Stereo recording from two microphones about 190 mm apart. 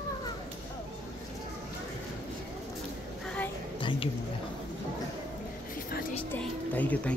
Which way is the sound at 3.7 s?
25° left (ahead or behind).